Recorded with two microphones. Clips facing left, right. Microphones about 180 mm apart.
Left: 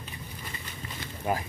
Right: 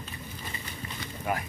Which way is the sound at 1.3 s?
30° left (ahead or behind).